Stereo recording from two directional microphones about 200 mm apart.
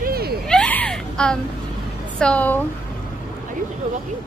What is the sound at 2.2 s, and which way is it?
Speech, 5° left (ahead or behind).